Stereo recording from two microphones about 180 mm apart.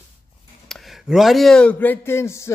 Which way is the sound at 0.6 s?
Centre (ahead or behind).